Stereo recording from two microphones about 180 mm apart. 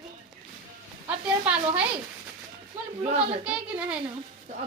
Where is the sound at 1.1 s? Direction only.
5° right (ahead or behind).